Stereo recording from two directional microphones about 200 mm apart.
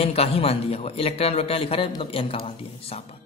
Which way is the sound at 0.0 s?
30° left (ahead or behind).